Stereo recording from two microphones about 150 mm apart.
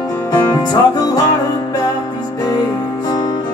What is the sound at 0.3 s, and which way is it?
Music, 25° left (ahead or behind).